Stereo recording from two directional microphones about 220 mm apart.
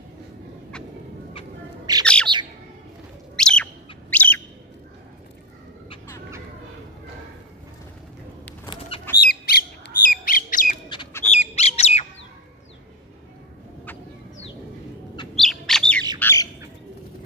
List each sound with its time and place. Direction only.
1.9 s bird: 15° right (ahead or behind)
3.3 s bird: 5° left (ahead or behind)
9.2 s bird: 45° left (ahead or behind)
11.3 s squawk: 30° left (ahead or behind)
15.3 s bird: centre (ahead or behind)
16.2 s squawk: 10° left (ahead or behind)